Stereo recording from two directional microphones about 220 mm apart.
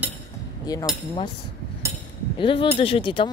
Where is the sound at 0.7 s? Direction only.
20° left (ahead or behind).